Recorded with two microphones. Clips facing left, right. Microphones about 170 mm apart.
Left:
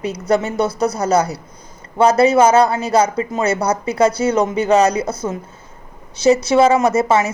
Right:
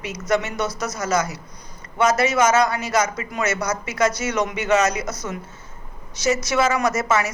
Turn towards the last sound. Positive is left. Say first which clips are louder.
# left 6 dB
turn(degrees=30)  # may be behind; listen again after turning